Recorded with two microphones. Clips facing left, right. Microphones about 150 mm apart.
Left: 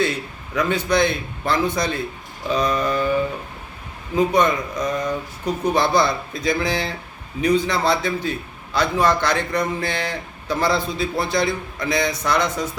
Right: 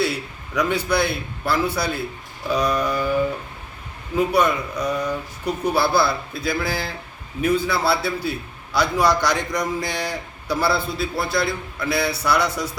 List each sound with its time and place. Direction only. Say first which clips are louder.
0.0 s a man's voice: left 1 dB; 10° right (ahead or behind)
4.2 s a man's voice: left 1 dB; 10° right (ahead or behind)